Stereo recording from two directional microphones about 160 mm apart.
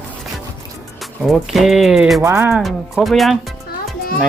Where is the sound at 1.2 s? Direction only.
Centre (ahead or behind).